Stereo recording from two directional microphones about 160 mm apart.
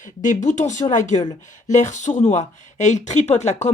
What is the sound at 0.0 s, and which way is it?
A child's voice, 50° left (ahead or behind).